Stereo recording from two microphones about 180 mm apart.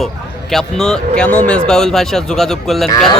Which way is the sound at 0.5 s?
5° left (ahead or behind).